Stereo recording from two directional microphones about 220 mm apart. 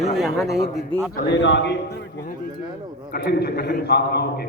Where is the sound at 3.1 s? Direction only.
50° left (ahead or behind).